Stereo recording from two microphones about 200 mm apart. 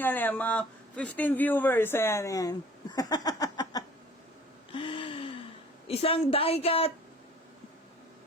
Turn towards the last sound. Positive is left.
turn(degrees=30)  # may be behind; listen again after turning